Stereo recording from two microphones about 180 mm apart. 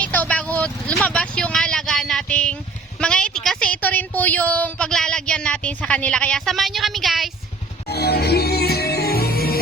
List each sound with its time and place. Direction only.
0.0 s a woman's voice: 10° left (ahead or behind)
7.9 s music: 65° left (ahead or behind)